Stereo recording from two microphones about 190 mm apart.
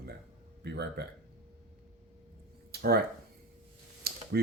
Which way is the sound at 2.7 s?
55° right (ahead or behind).